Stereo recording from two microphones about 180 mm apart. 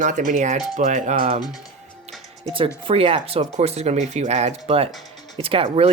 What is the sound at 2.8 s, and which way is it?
Speech, 30° right (ahead or behind).